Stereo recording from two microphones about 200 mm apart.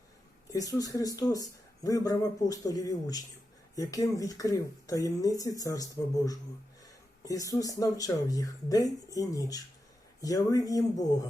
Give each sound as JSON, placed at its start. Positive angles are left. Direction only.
{"t": 0.5, "sound": "speech", "side_deg": 20}